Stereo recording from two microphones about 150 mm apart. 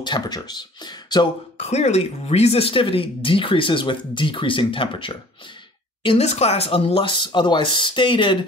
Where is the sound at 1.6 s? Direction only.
45° left (ahead or behind).